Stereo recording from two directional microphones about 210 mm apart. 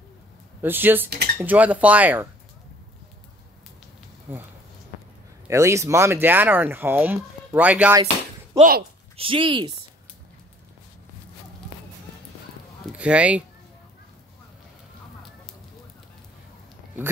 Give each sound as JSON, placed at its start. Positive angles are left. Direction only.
{"t": 0.6, "sound": "speech", "side_deg": -10}
{"t": 5.5, "sound": "speech", "side_deg": -15}
{"t": 8.5, "sound": "speech", "side_deg": -45}
{"t": 9.1, "sound": "speech", "side_deg": -25}
{"t": 12.8, "sound": "a sound", "side_deg": -5}